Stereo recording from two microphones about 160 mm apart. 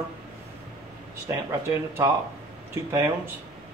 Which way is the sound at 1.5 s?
15° right (ahead or behind).